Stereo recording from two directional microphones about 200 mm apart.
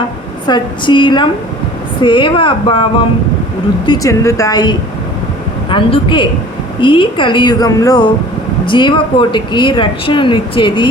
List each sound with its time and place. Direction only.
0.4 s speech: 20° left (ahead or behind)